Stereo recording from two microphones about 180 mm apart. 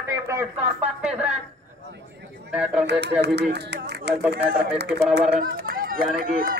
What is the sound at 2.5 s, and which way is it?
Speech, 5° right (ahead or behind).